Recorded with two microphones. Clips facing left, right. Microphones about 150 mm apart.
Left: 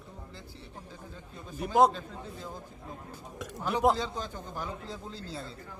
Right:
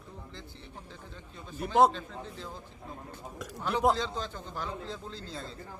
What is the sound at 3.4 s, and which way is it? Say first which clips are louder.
A man's voice: left 1 dB; centre (ahead or behind).